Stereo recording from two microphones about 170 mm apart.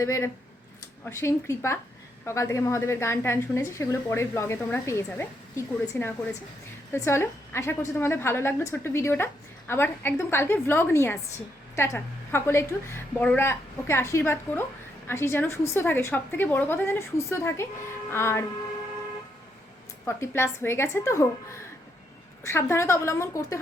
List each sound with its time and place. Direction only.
0.0 s a woman's voice: 15° left (ahead or behind)
20.1 s a woman's voice: 15° left (ahead or behind)